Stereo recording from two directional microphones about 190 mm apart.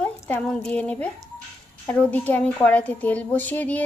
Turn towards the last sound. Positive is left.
turn(degrees=10)  # may be behind; listen again after turning